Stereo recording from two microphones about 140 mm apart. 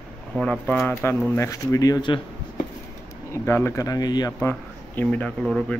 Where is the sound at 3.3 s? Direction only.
20° left (ahead or behind).